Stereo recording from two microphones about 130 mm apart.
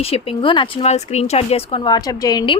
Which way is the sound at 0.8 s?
55° left (ahead or behind).